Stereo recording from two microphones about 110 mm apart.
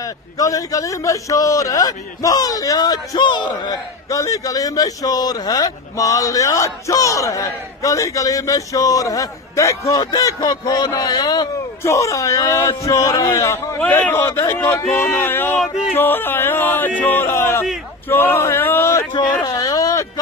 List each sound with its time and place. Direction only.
0.0 s a man's voice: 30° left (ahead or behind)
13.7 s a man's voice: 15° left (ahead or behind)
19.1 s speech: 35° left (ahead or behind)